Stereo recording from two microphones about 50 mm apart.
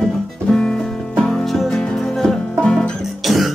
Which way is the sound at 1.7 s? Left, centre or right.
Centre.